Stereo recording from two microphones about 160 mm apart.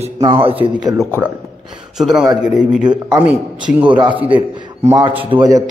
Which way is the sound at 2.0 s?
5° right (ahead or behind).